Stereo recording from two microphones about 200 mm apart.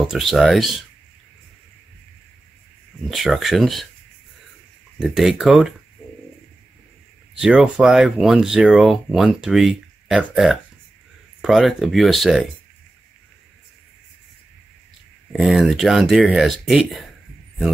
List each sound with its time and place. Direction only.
0.0 s speech: centre (ahead or behind)
3.1 s speech: centre (ahead or behind)
4.9 s speech: 5° right (ahead or behind)
7.3 s speech: 5° right (ahead or behind)
15.3 s speech: centre (ahead or behind)